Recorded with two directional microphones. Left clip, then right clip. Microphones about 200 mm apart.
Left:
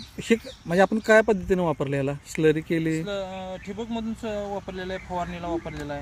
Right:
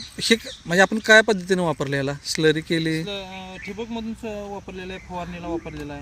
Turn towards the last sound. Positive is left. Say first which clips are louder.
# even
turn(degrees=10)  # may be behind; listen again after turning